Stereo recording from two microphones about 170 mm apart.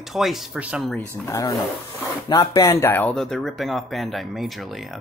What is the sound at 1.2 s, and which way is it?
Speech, 20° left (ahead or behind).